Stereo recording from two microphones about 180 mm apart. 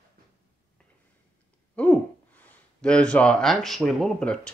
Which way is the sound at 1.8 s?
10° left (ahead or behind).